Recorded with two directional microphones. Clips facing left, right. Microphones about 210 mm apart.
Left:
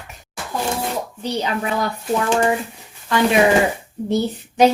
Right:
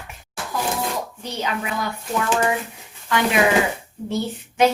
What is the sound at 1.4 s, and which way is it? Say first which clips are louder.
A woman's voice: left 3 dB; 35° left (ahead or behind).